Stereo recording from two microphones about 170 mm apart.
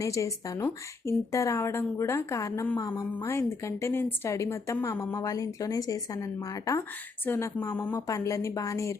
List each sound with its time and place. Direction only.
0.0 s a woman's voice: 20° left (ahead or behind)